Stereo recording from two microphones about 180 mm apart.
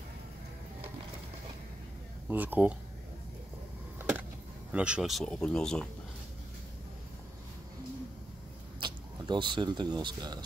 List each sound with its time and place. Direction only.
2.2 s speech: 10° right (ahead or behind)
4.0 s vehicle: 5° right (ahead or behind)
4.7 s speech: 5° right (ahead or behind)
8.7 s speech: 25° right (ahead or behind)